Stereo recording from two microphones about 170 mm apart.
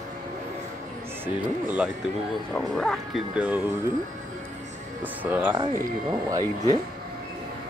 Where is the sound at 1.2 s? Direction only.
10° right (ahead or behind).